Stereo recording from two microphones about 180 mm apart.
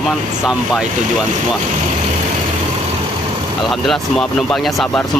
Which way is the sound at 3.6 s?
Centre (ahead or behind).